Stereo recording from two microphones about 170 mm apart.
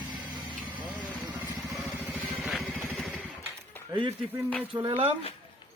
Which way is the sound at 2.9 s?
5° right (ahead or behind).